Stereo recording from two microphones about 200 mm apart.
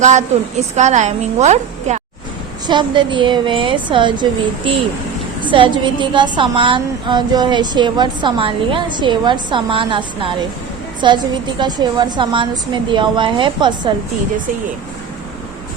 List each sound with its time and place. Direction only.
0.0 s a woman's voice: 35° right (ahead or behind)
2.6 s a woman's voice: 25° right (ahead or behind)